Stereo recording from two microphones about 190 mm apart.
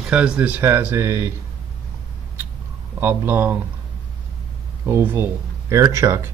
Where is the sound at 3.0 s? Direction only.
10° right (ahead or behind).